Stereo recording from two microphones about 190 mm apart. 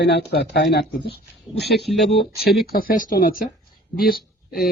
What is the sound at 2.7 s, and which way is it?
Speech, 50° left (ahead or behind).